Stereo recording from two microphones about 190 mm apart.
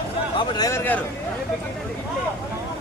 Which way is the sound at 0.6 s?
15° left (ahead or behind).